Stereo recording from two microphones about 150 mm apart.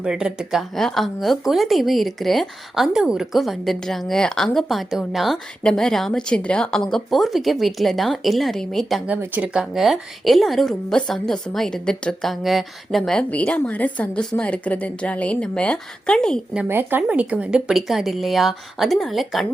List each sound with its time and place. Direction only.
0.0 s a woman's voice: 5° right (ahead or behind)
9.0 s a woman's voice: 10° right (ahead or behind); by 16.4 s 5° left (ahead or behind)
16.6 s a woman's voice: 15° right (ahead or behind)